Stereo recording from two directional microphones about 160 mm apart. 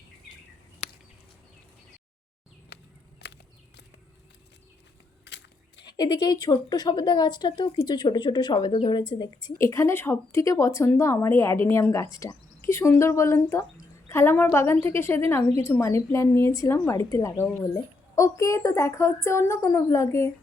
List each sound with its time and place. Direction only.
3.2 s walk: 90° left
5.2 s a sound: 90° left
5.8 s a woman's voice: 25° left (ahead or behind)